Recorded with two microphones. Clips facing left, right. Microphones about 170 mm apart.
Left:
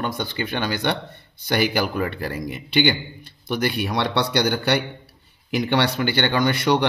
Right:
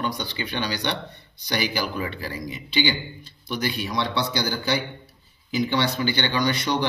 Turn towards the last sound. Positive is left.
turn(degrees=55)  # may be behind; listen again after turning